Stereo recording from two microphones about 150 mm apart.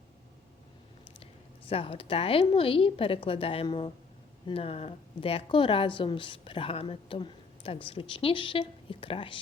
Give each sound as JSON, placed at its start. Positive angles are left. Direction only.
{"t": 1.2, "sound": "a woman's voice", "side_deg": 40}